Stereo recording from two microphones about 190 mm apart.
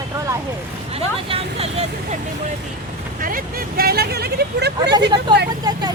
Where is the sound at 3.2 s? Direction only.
50° right (ahead or behind).